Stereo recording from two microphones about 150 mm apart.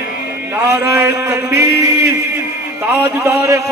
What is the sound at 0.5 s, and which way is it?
A man's voice, 15° right (ahead or behind).